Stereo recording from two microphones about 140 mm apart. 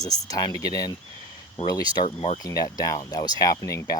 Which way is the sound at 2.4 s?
25° left (ahead or behind).